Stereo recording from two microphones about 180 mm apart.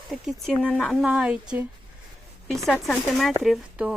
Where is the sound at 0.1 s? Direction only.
Centre (ahead or behind).